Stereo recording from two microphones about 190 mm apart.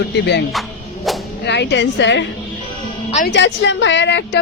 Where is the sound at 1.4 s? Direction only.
65° left (ahead or behind).